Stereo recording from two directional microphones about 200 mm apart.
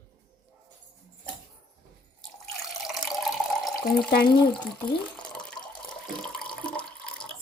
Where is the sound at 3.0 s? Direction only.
Centre (ahead or behind).